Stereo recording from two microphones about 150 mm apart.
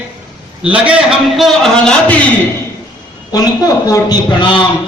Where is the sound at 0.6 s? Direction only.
5° right (ahead or behind).